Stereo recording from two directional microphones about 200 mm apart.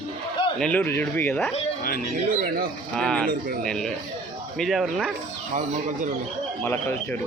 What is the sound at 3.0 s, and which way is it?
Speech, 5° left (ahead or behind).